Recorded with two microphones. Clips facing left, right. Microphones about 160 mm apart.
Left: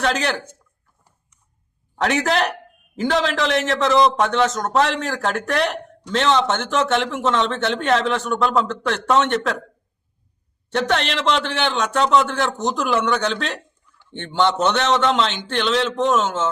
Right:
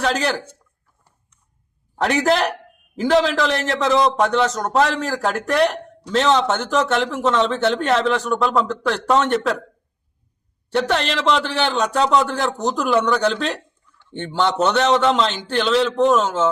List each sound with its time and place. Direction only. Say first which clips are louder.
0.0 s a man's voice: right 1 dB; centre (ahead or behind)
2.0 s a man's voice: right 2 dB; centre (ahead or behind)
10.7 s a man's voice: right 1 dB; centre (ahead or behind)